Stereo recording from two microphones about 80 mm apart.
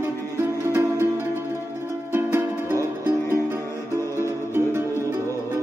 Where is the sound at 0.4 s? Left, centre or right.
Right.